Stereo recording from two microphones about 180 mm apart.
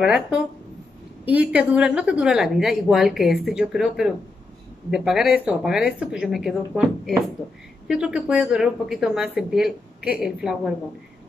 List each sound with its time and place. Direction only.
0.0 s speech: 5° right (ahead or behind)